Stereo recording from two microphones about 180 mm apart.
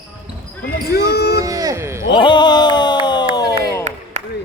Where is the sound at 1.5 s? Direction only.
20° right (ahead or behind).